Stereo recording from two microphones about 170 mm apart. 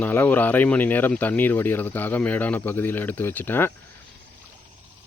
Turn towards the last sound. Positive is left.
turn(degrees=10)  # may be behind; listen again after turning